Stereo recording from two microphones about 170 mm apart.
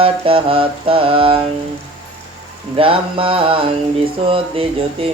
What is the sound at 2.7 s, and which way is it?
Mantra, 30° right (ahead or behind).